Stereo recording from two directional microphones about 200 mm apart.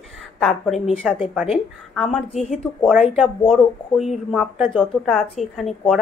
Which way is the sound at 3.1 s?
Centre (ahead or behind).